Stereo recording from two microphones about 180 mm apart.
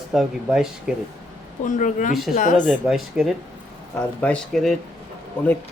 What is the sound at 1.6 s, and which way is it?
Speech, 45° left (ahead or behind).